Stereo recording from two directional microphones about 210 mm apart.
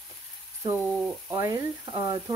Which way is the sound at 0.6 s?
15° right (ahead or behind).